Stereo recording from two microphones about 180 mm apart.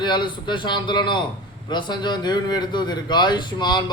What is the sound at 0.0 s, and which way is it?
Speech, 25° left (ahead or behind).